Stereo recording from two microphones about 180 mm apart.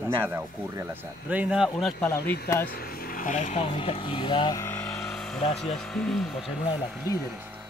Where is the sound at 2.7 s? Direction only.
55° left (ahead or behind); by 6.5 s centre (ahead or behind).